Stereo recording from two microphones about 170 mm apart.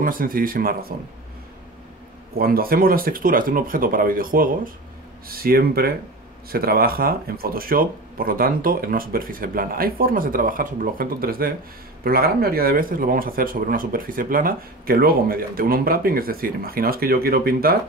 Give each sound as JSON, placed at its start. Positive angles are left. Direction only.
{"t": 0.0, "sound": "speech", "side_deg": -55}
{"t": 2.3, "sound": "speech", "side_deg": -60}